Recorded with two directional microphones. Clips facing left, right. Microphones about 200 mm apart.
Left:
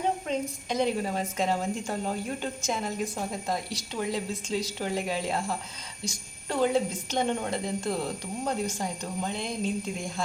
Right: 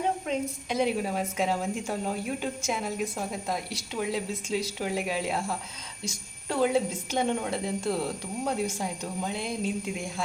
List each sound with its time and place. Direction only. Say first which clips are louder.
0.3 s a woman's voice: even; 5° right (ahead or behind)